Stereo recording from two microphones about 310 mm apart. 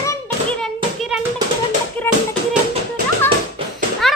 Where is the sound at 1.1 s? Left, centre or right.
Centre.